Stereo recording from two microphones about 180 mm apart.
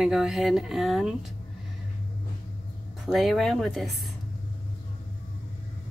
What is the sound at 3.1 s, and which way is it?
Speech, centre (ahead or behind).